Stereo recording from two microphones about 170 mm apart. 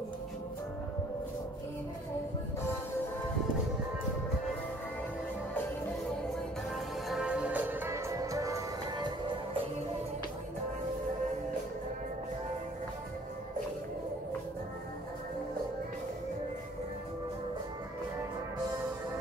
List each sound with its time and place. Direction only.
7.1 s music: 5° right (ahead or behind); by 9.1 s 20° right (ahead or behind)